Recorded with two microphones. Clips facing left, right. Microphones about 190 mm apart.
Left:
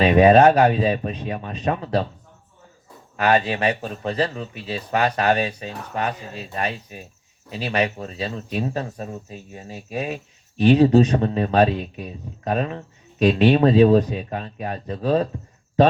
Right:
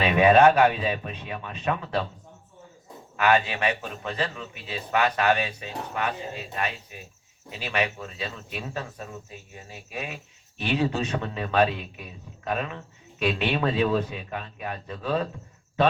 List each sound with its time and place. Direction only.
0.0 s speech: 35° left (ahead or behind)
3.2 s speech: 35° left (ahead or behind)